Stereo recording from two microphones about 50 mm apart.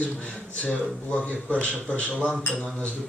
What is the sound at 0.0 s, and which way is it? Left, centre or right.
A man's voice, left.